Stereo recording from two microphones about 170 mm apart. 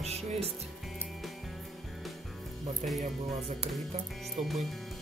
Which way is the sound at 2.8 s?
40° right (ahead or behind).